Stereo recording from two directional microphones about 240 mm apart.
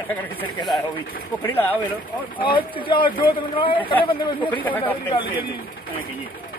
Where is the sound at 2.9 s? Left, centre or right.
Centre.